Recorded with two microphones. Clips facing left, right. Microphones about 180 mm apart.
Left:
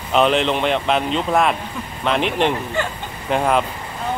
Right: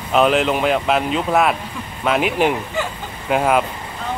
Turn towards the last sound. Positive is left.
turn(degrees=-5)  # may be behind; listen again after turning